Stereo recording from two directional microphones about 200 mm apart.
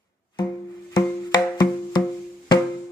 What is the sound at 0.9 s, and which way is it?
Music, 20° left (ahead or behind).